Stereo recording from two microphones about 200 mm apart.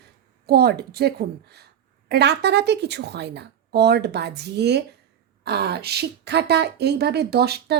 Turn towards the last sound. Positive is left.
turn(degrees=-55)  # may be behind; listen again after turning